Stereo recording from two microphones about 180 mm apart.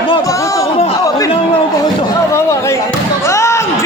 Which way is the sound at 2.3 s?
15° left (ahead or behind).